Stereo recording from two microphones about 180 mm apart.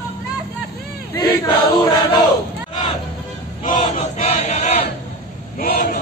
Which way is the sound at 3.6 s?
45° left (ahead or behind).